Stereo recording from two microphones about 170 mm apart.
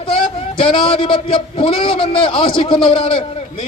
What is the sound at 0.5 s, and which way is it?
A man's voice, 30° left (ahead or behind).